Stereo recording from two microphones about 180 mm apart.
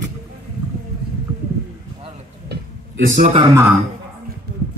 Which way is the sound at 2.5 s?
65° right (ahead or behind).